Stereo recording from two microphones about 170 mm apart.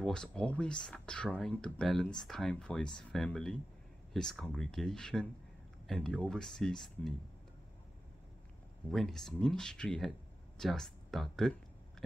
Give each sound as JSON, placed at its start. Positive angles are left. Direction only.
{"t": 0.0, "sound": "speech", "side_deg": 5}
{"t": 8.9, "sound": "speech", "side_deg": 0}